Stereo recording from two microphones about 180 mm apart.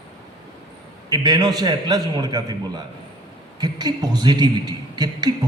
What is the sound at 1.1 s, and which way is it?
A man's voice, 25° right (ahead or behind).